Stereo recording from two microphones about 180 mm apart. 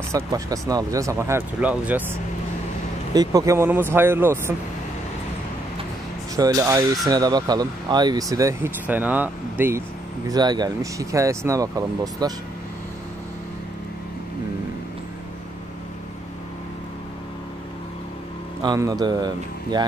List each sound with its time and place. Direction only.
0.1 s speech: 20° right (ahead or behind)
3.2 s speech: 20° right (ahead or behind)
6.3 s speech: 20° right (ahead or behind)
10.3 s speech: 25° right (ahead or behind)
18.6 s speech: 20° right (ahead or behind)